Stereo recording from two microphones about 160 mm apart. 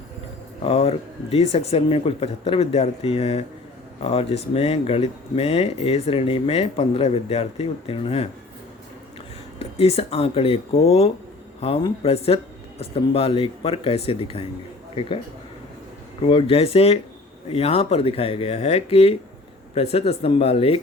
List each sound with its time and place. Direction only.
0.6 s speech: 40° left (ahead or behind)
9.6 s speech: 40° left (ahead or behind)
16.2 s speech: 35° left (ahead or behind)